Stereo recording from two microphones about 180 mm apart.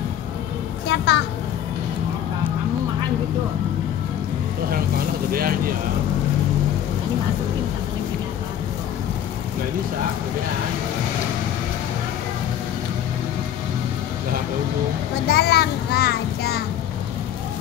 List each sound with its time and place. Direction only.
0.8 s a child's voice: 70° left (ahead or behind)
4.6 s vehicle: 55° right (ahead or behind)
15.2 s child singing: 65° left (ahead or behind)